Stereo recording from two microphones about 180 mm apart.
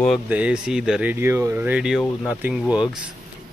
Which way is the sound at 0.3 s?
5° right (ahead or behind).